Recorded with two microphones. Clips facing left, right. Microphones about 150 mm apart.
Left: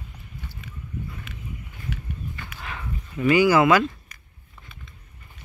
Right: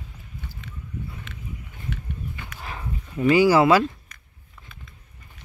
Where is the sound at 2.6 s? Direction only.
35° right (ahead or behind).